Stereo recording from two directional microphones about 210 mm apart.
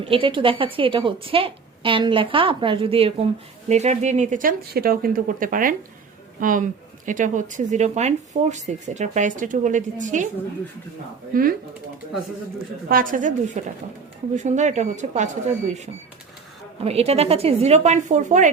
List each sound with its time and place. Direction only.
0.0 s a woman's voice: 25° right (ahead or behind)
12.9 s speech: 40° right (ahead or behind)
16.8 s speech: 30° right (ahead or behind)